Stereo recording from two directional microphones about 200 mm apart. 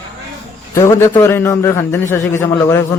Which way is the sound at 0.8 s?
15° left (ahead or behind).